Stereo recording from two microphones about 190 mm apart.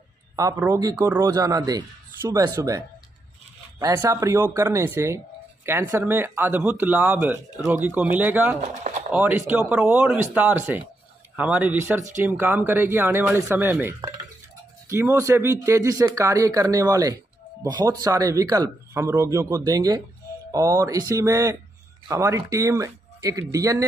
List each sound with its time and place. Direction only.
0.4 s speech: 15° right (ahead or behind)
3.8 s speech: 15° right (ahead or behind)